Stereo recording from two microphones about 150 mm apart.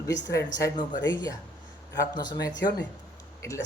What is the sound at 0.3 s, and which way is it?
Speech, 20° left (ahead or behind).